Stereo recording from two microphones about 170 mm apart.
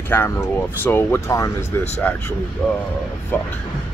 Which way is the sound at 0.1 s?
10° left (ahead or behind).